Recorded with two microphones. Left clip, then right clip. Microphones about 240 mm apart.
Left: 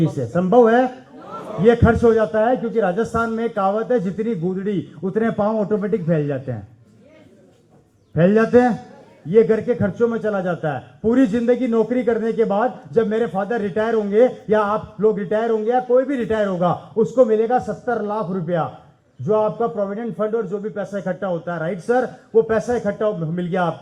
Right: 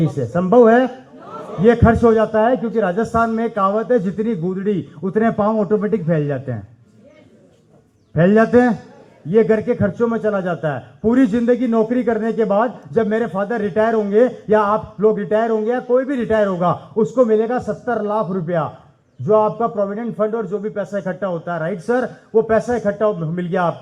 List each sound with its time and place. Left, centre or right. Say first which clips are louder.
0.3 s a man's voice: right 2 dB; right
8.1 s a man's voice: right 1 dB; right